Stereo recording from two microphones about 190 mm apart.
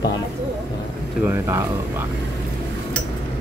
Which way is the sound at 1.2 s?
10° right (ahead or behind).